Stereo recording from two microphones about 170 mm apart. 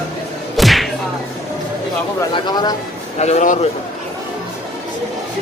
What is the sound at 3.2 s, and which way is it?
Speech, 40° left (ahead or behind).